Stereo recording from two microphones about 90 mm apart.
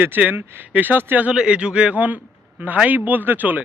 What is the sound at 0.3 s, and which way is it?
Speech, 25° right (ahead or behind).